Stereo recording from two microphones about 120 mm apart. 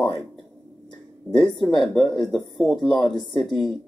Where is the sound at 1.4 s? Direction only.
40° left (ahead or behind).